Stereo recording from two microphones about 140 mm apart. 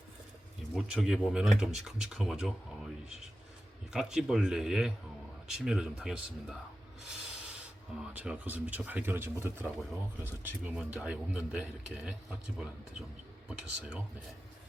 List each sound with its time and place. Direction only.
0.7 s speech: centre (ahead or behind)
3.9 s speech: 5° right (ahead or behind)
13.5 s speech: 5° right (ahead or behind)